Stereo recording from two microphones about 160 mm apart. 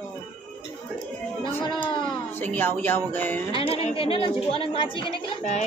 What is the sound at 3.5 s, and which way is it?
A woman's voice, 35° left (ahead or behind).